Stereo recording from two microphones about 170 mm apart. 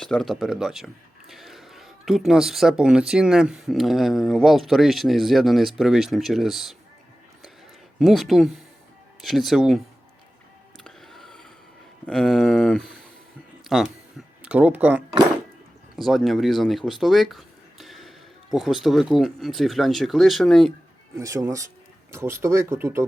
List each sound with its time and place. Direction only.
0.0 s speech: 5° left (ahead or behind)
7.9 s speech: centre (ahead or behind)
10.8 s a sound: centre (ahead or behind)
12.0 s speech: 5° left (ahead or behind)
21.2 s speech: 20° right (ahead or behind)